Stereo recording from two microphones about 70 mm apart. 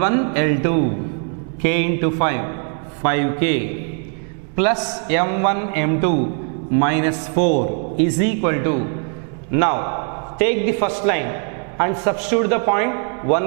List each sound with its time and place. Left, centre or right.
0.0 s a man's voice: centre